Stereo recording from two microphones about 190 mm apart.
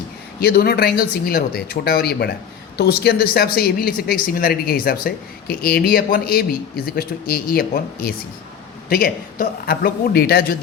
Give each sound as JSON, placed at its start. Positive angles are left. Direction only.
{"t": 0.3, "sound": "speech", "side_deg": 55}
{"t": 8.9, "sound": "speech", "side_deg": 55}